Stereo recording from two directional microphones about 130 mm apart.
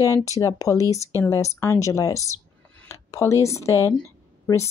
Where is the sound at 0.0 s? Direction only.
25° left (ahead or behind).